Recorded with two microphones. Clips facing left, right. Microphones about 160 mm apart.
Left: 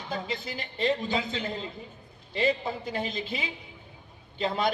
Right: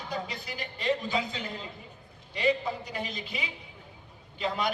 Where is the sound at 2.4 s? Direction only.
30° left (ahead or behind).